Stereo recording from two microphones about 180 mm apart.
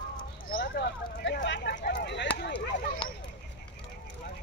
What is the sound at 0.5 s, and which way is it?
Speech, 60° left (ahead or behind).